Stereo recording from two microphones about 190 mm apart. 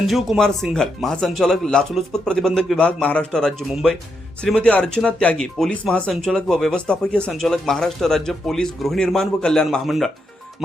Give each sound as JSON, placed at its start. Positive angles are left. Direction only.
{"t": 0.1, "sound": "speech", "side_deg": 0}